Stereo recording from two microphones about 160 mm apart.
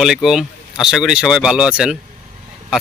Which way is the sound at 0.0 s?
5° right (ahead or behind).